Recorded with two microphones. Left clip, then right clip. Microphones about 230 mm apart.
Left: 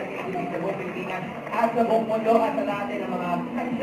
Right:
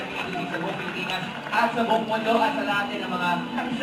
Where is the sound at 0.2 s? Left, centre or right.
Right.